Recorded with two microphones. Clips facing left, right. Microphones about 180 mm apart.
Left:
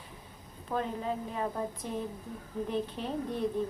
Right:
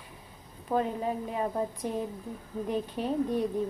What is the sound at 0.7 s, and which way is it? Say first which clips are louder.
Speech: right 5 dB; 20° right (ahead or behind).